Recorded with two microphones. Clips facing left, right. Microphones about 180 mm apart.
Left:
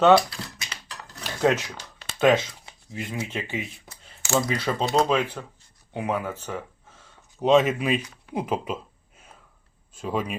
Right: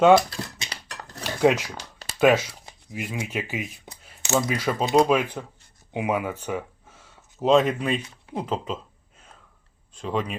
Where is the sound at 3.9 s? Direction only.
20° right (ahead or behind).